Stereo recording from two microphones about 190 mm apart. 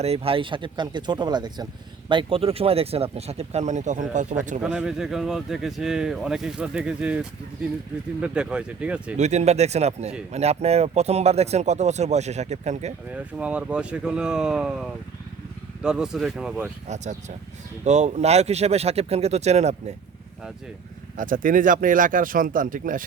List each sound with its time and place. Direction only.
0.0 s speech: 30° right (ahead or behind)
4.6 s speech: 5° right (ahead or behind)
9.1 s speech: 35° right (ahead or behind)
13.4 s speech: 5° right (ahead or behind)
16.9 s speech: 40° right (ahead or behind)
21.2 s speech: 45° right (ahead or behind)